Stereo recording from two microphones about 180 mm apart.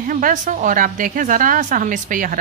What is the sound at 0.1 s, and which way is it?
A woman's voice, 45° right (ahead or behind).